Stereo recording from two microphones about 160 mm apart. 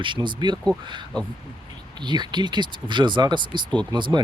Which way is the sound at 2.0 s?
30° right (ahead or behind).